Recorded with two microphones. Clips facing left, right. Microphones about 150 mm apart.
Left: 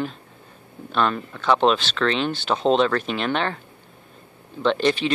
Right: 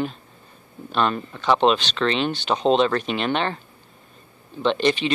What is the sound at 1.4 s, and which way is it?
Speech, 15° right (ahead or behind).